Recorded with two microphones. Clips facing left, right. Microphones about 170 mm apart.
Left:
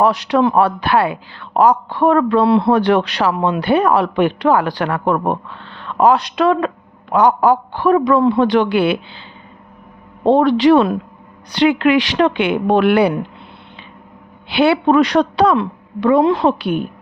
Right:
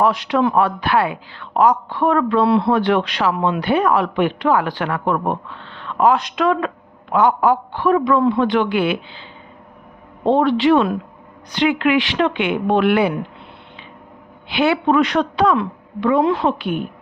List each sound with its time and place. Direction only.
0.0 s a woman's voice: 40° left (ahead or behind)
10.3 s a woman's voice: 40° left (ahead or behind)
14.4 s a woman's voice: 35° left (ahead or behind)